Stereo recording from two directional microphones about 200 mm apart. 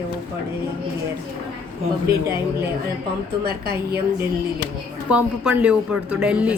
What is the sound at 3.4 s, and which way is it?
Speech, 50° right (ahead or behind).